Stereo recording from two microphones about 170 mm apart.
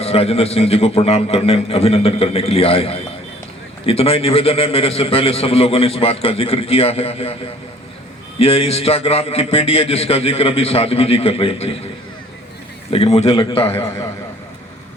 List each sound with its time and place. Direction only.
0.0 s a man's voice: 35° left (ahead or behind)
8.4 s a man's voice: 35° left (ahead or behind)
12.9 s a man's voice: 35° left (ahead or behind)